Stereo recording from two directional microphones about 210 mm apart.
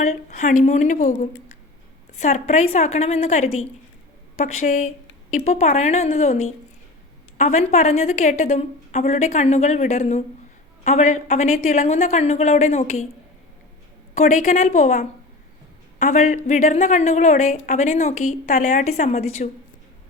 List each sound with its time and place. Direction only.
0.0 s a woman's voice: 35° left (ahead or behind)
14.2 s a woman's voice: 35° left (ahead or behind)